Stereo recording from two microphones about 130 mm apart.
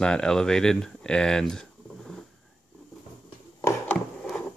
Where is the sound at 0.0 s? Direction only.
5° left (ahead or behind).